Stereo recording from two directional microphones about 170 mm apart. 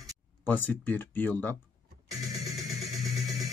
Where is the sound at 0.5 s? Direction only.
10° left (ahead or behind).